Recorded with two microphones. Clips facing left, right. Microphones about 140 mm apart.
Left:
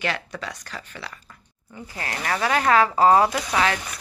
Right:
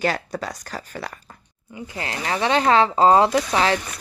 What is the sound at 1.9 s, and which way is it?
Speech, 25° right (ahead or behind).